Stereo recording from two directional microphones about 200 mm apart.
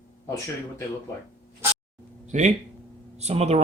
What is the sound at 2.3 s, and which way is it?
Speech, 40° right (ahead or behind).